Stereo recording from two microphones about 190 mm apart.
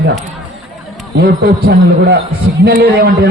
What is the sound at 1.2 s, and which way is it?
A man's voice, 60° right (ahead or behind).